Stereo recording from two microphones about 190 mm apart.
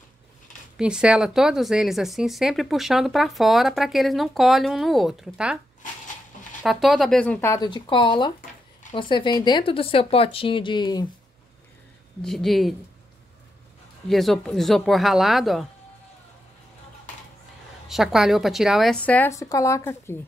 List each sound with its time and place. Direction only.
0.7 s speech: 5° right (ahead or behind)
6.6 s speech: centre (ahead or behind); by 11.1 s 20° left (ahead or behind)
12.2 s speech: centre (ahead or behind)
14.0 s speech: centre (ahead or behind)
17.8 s speech: centre (ahead or behind); by 20.2 s 15° left (ahead or behind)